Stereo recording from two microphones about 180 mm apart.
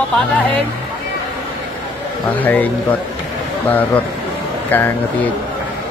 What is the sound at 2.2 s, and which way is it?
Speech, 10° left (ahead or behind).